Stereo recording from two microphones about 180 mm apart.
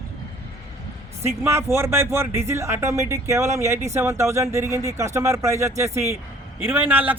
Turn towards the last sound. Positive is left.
turn(degrees=-10)  # may be behind; listen again after turning